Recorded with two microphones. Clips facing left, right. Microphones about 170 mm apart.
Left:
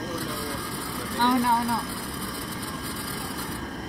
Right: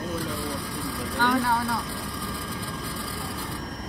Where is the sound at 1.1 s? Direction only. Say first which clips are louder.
Left 2 dB; 20° left (ahead or behind).